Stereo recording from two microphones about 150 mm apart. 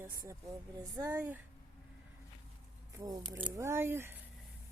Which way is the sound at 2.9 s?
20° right (ahead or behind).